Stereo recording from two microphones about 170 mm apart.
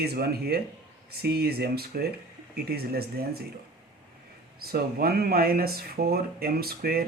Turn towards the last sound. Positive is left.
turn(degrees=-65)  # may be behind; listen again after turning